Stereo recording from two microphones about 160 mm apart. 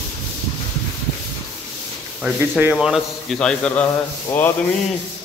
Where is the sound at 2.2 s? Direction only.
10° right (ahead or behind); by 3.9 s 5° left (ahead or behind).